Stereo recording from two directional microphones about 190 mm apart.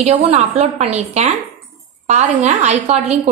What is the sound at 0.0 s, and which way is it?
A woman's voice, 35° right (ahead or behind).